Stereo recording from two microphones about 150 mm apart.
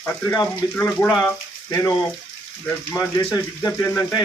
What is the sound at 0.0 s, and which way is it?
Speech, 10° left (ahead or behind).